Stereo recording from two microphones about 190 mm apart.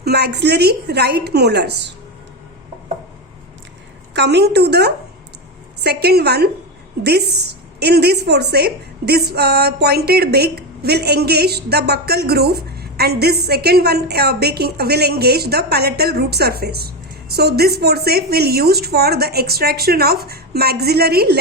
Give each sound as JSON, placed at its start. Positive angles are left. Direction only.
{"t": 0.0, "sound": "a woman's voice", "side_deg": -60}
{"t": 4.1, "sound": "a woman's voice", "side_deg": -65}